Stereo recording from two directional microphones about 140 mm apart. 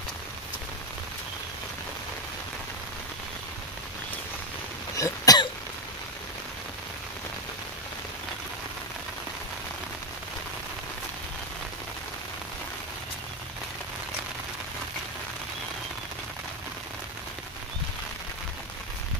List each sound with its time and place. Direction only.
4.9 s throat clearing: 25° left (ahead or behind)